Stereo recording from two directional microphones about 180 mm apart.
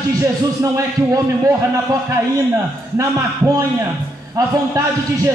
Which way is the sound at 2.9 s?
15° right (ahead or behind).